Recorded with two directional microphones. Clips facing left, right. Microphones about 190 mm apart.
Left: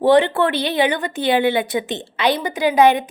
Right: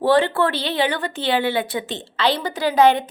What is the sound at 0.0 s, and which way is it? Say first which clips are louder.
A woman's voice: left 3 dB; 20° left (ahead or behind).